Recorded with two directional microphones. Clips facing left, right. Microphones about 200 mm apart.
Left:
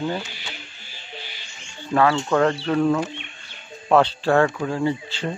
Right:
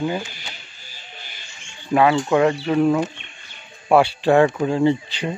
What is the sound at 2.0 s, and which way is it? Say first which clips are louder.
Speech: right 2 dB; 15° right (ahead or behind).